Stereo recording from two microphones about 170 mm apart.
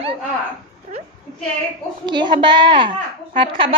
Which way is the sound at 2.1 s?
25° right (ahead or behind).